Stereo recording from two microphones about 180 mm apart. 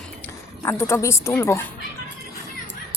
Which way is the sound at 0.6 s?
15° left (ahead or behind).